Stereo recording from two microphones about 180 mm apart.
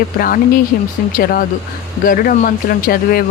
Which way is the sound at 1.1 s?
55° left (ahead or behind).